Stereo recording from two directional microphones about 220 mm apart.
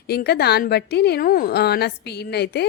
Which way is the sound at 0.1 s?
45° left (ahead or behind).